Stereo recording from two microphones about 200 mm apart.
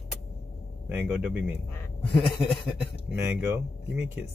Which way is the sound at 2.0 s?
25° left (ahead or behind).